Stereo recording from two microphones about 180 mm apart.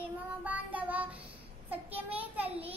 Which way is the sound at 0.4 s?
10° right (ahead or behind).